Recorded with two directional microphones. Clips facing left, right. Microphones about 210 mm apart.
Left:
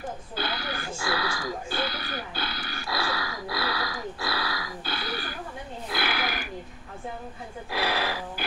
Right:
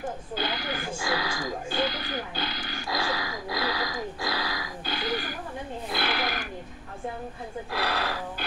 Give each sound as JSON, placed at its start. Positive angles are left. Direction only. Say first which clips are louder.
{"t": 0.4, "sound": "a sound", "louder": "even", "side_deg": -15}
{"t": 5.9, "sound": "roaring cats", "louder": "even", "side_deg": 0}
{"t": 7.7, "sound": "music", "louder": "left 2 dB", "side_deg": 0}